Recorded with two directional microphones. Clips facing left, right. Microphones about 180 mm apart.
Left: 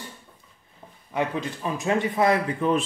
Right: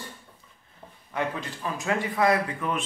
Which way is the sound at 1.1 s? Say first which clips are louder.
Left 4 dB; 20° left (ahead or behind).